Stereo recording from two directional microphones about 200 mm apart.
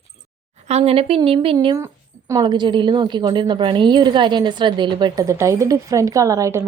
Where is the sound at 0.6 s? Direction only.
30° right (ahead or behind).